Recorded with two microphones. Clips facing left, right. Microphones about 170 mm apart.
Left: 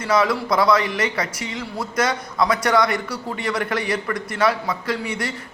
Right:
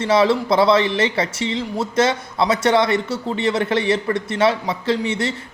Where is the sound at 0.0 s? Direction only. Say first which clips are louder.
Right 4 dB; 25° right (ahead or behind).